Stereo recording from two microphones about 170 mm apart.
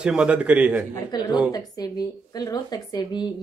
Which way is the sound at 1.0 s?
25° left (ahead or behind).